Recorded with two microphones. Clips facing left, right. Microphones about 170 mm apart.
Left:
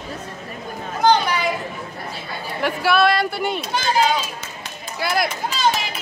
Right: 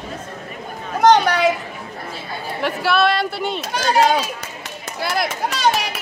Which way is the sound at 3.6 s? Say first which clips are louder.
Right 4 dB; 70° right (ahead or behind).